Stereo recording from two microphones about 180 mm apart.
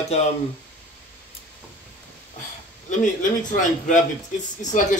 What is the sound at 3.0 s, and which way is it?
A man's voice, 45° left (ahead or behind).